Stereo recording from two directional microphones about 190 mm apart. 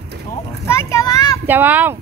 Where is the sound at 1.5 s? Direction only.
10° right (ahead or behind).